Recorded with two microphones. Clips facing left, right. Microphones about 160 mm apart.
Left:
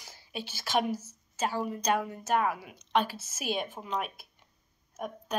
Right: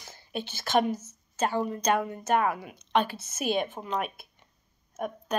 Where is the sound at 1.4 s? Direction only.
5° left (ahead or behind).